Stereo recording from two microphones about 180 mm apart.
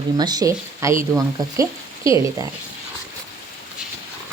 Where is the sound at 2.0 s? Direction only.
20° right (ahead or behind).